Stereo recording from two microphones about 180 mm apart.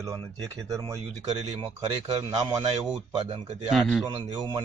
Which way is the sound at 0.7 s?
15° right (ahead or behind).